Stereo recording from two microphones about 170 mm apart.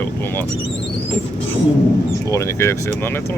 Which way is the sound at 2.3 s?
15° left (ahead or behind).